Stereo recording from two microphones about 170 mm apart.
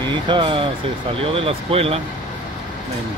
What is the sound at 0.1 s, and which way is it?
Speech, 30° right (ahead or behind).